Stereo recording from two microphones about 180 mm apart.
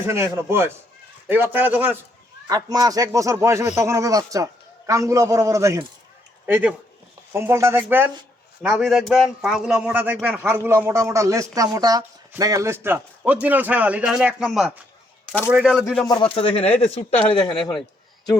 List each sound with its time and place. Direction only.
0.0 s a man's voice: 15° right (ahead or behind)
8.6 s a man's voice: centre (ahead or behind)
16.0 s speech: 25° left (ahead or behind)